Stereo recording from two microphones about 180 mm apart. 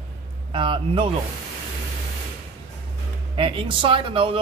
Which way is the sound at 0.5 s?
25° right (ahead or behind).